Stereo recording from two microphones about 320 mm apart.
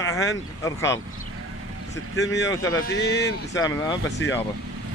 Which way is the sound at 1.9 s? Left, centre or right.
Left.